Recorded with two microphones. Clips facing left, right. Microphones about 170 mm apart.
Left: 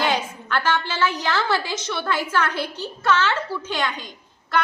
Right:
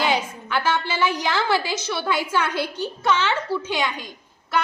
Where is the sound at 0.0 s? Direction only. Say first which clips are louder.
Right 1 dB; 10° right (ahead or behind).